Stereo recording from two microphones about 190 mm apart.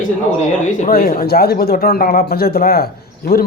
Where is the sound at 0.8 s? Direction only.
50° left (ahead or behind).